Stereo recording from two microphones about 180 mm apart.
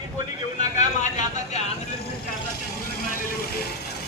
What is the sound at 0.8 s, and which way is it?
Speech, 40° left (ahead or behind).